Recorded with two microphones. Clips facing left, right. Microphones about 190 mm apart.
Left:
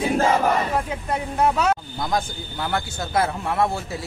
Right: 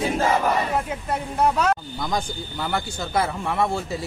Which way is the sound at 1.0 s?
Centre (ahead or behind).